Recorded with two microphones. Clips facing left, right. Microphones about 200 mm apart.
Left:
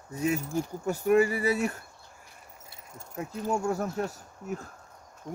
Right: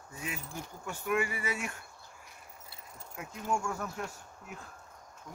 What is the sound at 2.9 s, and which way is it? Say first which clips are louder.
Speech: left 9 dB; 35° left (ahead or behind).